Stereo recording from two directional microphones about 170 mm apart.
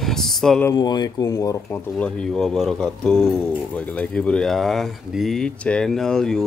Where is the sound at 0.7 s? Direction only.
25° left (ahead or behind).